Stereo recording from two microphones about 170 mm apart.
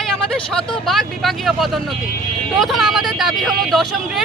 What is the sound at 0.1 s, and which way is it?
Speech, 5° left (ahead or behind).